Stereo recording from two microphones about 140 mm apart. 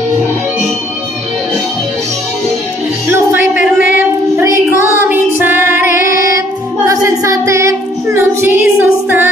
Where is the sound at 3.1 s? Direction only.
15° right (ahead or behind).